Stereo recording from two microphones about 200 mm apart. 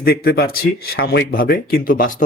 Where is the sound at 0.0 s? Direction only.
50° left (ahead or behind).